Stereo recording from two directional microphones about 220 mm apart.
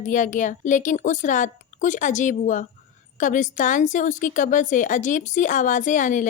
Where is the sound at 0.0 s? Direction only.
35° left (ahead or behind).